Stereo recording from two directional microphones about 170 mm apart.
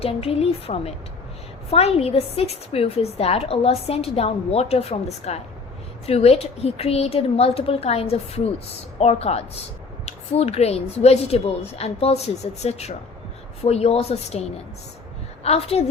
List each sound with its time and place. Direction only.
0.0 s a woman's voice: 35° left (ahead or behind)